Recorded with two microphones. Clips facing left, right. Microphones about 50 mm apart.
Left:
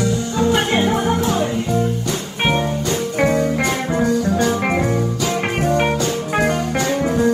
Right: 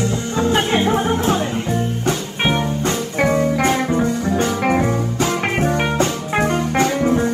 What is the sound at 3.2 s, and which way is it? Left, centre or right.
Music, right.